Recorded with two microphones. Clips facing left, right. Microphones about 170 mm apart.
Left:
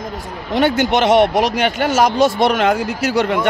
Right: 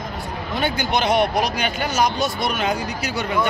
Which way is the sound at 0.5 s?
85° left.